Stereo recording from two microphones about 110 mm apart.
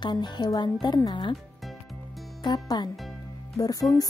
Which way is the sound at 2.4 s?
40° left (ahead or behind).